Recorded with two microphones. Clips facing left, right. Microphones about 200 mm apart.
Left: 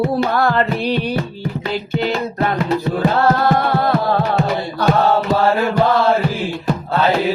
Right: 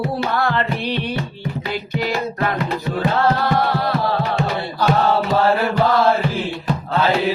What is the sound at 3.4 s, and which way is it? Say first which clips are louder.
Music: left 3 dB; 50° left (ahead or behind).